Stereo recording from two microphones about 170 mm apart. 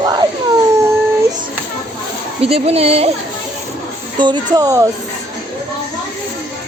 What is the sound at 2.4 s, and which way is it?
Speech, 35° right (ahead or behind).